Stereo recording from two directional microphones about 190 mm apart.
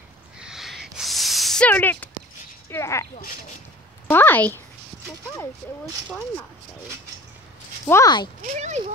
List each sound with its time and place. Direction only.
0.4 s a sound: centre (ahead or behind); by 3.1 s 15° left (ahead or behind)
4.1 s speech: 10° left (ahead or behind)
7.9 s speech: 20° left (ahead or behind)
8.4 s speech: 40° right (ahead or behind)